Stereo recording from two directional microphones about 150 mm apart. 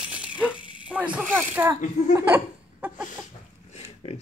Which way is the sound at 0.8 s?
10° right (ahead or behind).